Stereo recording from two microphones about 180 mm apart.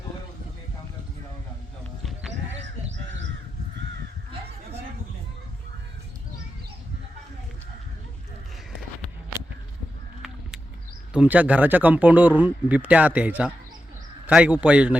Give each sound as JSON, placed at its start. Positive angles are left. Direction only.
{"t": 11.1, "sound": "speech", "side_deg": -5}